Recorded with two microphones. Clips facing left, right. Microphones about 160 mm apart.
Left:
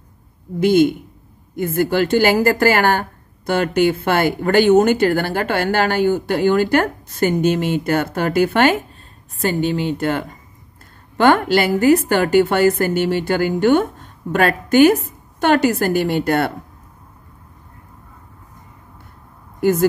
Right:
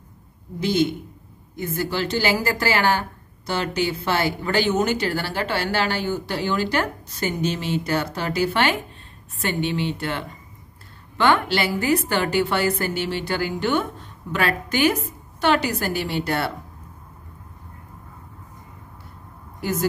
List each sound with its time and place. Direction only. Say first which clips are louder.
0.6 s a woman's voice: left 8 dB; 50° left (ahead or behind)
19.6 s a woman's voice: left 9 dB; 50° left (ahead or behind)